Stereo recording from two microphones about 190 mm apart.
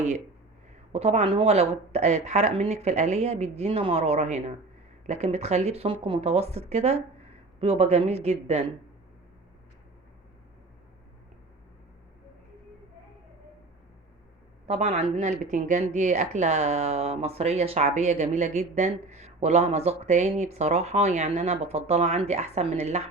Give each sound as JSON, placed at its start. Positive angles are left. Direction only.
{"t": 0.9, "sound": "speech", "side_deg": -30}
{"t": 14.7, "sound": "speech", "side_deg": -35}